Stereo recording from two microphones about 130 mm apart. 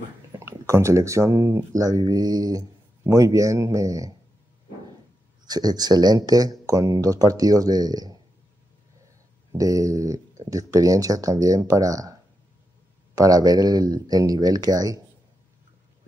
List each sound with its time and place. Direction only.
0.3 s speech: 20° right (ahead or behind)
5.4 s speech: 30° right (ahead or behind)
9.5 s speech: 25° right (ahead or behind)
13.2 s speech: 30° right (ahead or behind)